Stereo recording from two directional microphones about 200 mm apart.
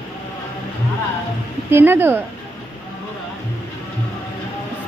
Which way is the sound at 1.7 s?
10° right (ahead or behind).